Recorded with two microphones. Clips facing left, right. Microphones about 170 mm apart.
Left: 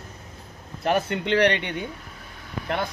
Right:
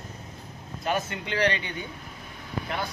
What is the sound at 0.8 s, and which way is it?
Speech, 65° left (ahead or behind).